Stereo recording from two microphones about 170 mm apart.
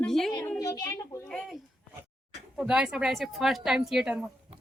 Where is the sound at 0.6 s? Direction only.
20° left (ahead or behind).